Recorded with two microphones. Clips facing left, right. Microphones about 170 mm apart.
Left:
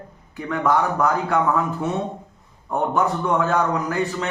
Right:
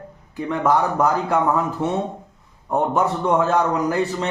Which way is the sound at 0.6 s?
30° right (ahead or behind).